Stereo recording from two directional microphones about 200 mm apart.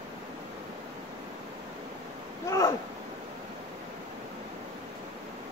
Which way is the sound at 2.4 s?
15° left (ahead or behind).